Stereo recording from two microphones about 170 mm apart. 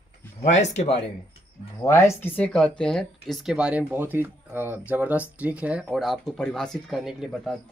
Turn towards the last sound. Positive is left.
turn(degrees=0)  # may be behind; listen again after turning